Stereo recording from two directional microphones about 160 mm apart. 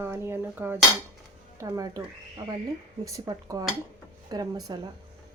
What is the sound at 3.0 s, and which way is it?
Speech, 20° right (ahead or behind).